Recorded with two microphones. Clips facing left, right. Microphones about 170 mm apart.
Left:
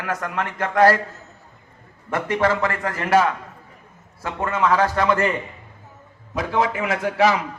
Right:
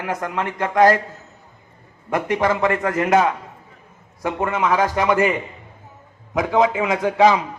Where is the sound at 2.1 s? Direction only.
15° right (ahead or behind).